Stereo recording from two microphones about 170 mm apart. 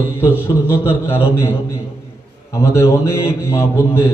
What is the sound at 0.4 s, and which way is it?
Speech, 15° left (ahead or behind).